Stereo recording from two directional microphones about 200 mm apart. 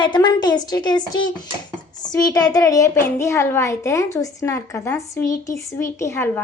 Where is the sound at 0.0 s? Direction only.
20° left (ahead or behind).